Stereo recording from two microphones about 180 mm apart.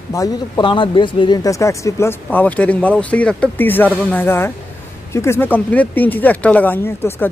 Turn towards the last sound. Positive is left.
turn(degrees=10)  # may be behind; listen again after turning